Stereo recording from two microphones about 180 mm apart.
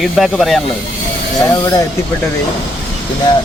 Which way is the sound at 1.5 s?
20° left (ahead or behind).